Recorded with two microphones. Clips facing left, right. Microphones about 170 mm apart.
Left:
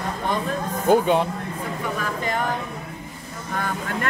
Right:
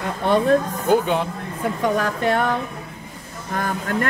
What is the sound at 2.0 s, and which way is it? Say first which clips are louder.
Speech: right 5 dB; 70° right (ahead or behind).